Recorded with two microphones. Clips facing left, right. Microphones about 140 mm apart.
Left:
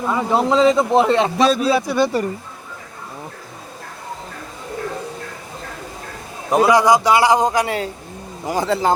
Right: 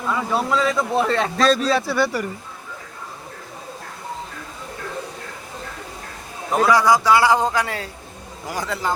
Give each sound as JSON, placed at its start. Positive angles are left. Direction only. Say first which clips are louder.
{"t": 0.0, "sound": "speech", "louder": "left 4 dB", "side_deg": 25}
{"t": 6.5, "sound": "a man's voice", "louder": "left 3 dB", "side_deg": 15}
{"t": 8.4, "sound": "speech", "louder": "left 7 dB", "side_deg": 25}